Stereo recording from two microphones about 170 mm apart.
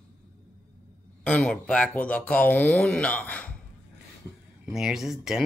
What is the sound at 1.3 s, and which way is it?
Speech, 5° left (ahead or behind).